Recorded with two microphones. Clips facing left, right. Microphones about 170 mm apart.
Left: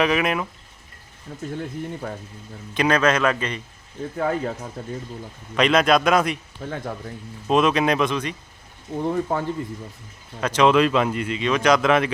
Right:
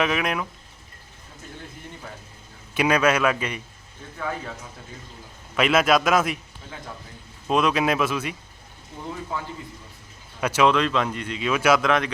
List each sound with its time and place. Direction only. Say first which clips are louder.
0.0 s speech: left 3 dB; centre (ahead or behind)
1.3 s speech: left 12 dB; 50° left (ahead or behind)
2.7 s a man's voice: left 1 dB; 10° right (ahead or behind)
4.2 s speech: left 7 dB; 45° left (ahead or behind)
5.5 s speech: left 2 dB; 5° right (ahead or behind)
6.6 s speech: left 9 dB; 55° left (ahead or behind)
7.4 s speech: left 3 dB; centre (ahead or behind)
9.0 s speech: left 9 dB; 55° left (ahead or behind)
10.4 s a man's voice: left 1 dB; 10° right (ahead or behind)
10.7 s speech: left 4 dB; 5° left (ahead or behind)